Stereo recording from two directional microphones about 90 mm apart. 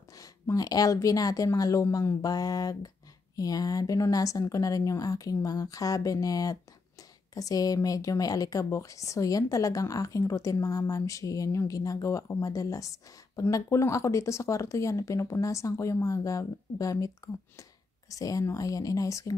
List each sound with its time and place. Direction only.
0.1 s a woman's voice: 40° left (ahead or behind)